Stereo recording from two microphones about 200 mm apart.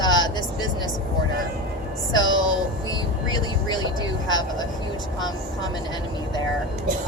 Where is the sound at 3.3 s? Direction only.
20° left (ahead or behind).